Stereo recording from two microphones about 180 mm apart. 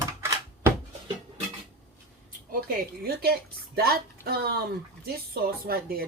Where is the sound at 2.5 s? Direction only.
55° right (ahead or behind).